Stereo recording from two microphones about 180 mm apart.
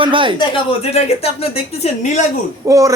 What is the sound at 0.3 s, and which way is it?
A woman's voice, 30° left (ahead or behind).